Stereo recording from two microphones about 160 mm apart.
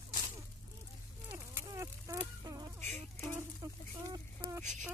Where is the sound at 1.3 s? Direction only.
15° right (ahead or behind).